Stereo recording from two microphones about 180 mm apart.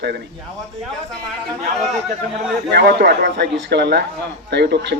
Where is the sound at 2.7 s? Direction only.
65° right (ahead or behind).